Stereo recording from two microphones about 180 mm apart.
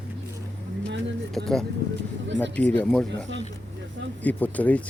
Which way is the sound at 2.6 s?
10° left (ahead or behind).